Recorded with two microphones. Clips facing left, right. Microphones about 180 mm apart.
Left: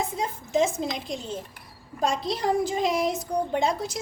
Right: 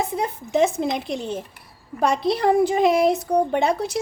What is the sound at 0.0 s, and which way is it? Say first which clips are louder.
A woman's voice: right 4 dB; 60° right (ahead or behind).